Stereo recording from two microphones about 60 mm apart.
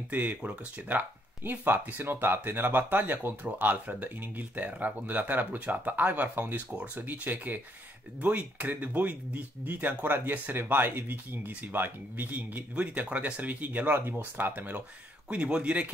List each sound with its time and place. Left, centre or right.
0.1 s speech: right
15.2 s speech: centre